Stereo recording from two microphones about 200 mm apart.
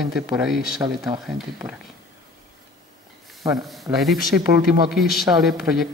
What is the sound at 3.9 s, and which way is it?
Speech, centre (ahead or behind).